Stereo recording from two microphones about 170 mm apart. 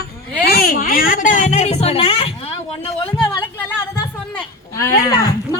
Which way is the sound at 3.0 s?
10° left (ahead or behind).